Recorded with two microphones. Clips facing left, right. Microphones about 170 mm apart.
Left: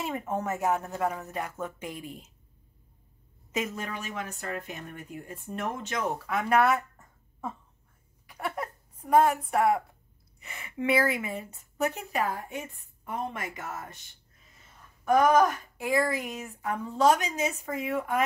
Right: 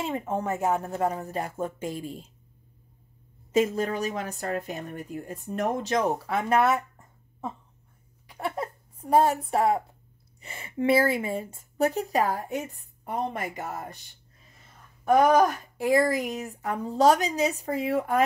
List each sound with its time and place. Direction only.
0.0 s a woman's voice: 30° right (ahead or behind)
3.5 s a woman's voice: 35° right (ahead or behind)
6.5 s a sound: 20° right (ahead or behind)
8.3 s a woman's voice: 25° right (ahead or behind)
15.0 s a woman's voice: 30° right (ahead or behind)